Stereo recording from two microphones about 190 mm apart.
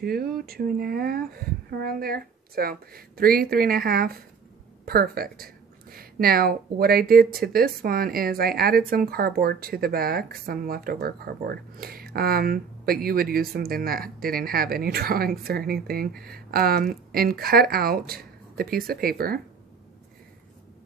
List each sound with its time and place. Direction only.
0.0 s a woman's voice: 55° right (ahead or behind)